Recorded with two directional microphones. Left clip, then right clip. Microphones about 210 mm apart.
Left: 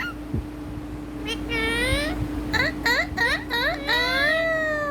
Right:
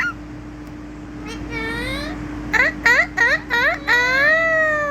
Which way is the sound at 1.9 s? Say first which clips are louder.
Left 2 dB; 45° left (ahead or behind).